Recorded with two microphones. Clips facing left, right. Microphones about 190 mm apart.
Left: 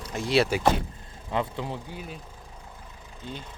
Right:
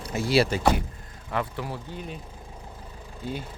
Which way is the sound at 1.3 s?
20° left (ahead or behind).